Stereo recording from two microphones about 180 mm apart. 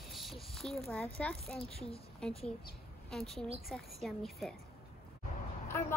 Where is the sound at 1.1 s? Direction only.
5° left (ahead or behind).